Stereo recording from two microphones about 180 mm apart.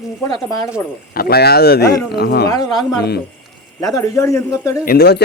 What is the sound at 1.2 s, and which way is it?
A man's voice, 60° left (ahead or behind).